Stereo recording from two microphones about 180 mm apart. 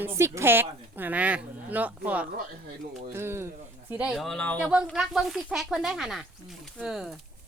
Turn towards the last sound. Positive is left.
turn(degrees=-5)  # may be behind; listen again after turning